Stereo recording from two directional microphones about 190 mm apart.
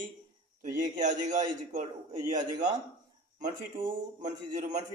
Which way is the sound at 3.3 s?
40° right (ahead or behind).